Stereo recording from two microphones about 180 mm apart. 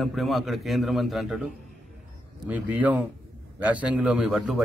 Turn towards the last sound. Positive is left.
turn(degrees=-5)  # may be behind; listen again after turning